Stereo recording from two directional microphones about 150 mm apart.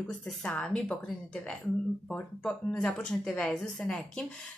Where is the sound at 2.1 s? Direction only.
10° left (ahead or behind).